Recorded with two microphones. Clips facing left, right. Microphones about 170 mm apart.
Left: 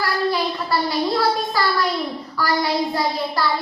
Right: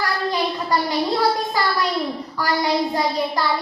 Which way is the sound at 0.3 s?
20° right (ahead or behind).